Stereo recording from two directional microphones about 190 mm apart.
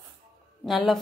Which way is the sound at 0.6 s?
Centre (ahead or behind).